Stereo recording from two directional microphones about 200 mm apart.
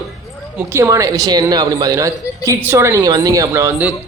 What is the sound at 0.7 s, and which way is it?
A woman's voice, 15° right (ahead or behind).